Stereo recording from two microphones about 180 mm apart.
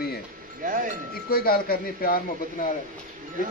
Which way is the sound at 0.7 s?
50° right (ahead or behind).